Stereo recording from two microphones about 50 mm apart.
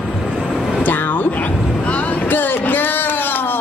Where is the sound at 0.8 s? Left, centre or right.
Left.